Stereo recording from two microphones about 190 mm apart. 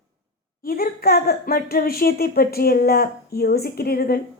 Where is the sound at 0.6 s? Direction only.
50° left (ahead or behind).